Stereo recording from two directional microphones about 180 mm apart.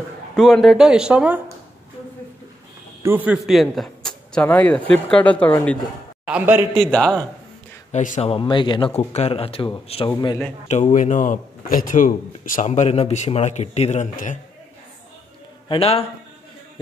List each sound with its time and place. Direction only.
0.4 s speech: centre (ahead or behind)
3.0 s a man's voice: 10° right (ahead or behind); by 5.8 s 10° left (ahead or behind)
6.2 s a man's voice: 10° right (ahead or behind)
6.7 s speech: 5° left (ahead or behind)
7.9 s a man's voice: 40° left (ahead or behind)
8.3 s speech: 30° left (ahead or behind)
10.7 s speech: 40° left (ahead or behind)
15.7 s speech: 35° left (ahead or behind)